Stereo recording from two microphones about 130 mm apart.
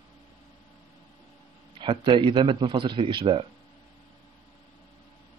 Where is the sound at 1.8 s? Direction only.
40° right (ahead or behind).